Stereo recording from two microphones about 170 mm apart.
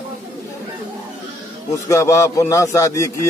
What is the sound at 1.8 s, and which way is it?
Speech, 15° left (ahead or behind).